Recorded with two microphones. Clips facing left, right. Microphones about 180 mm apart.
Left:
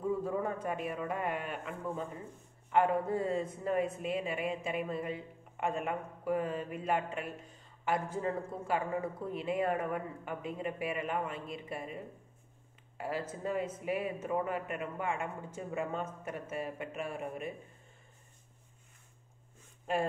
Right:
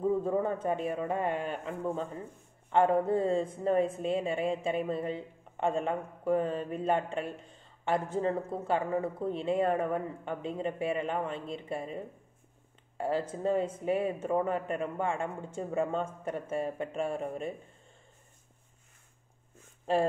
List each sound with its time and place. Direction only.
0.2 s speech: 25° right (ahead or behind)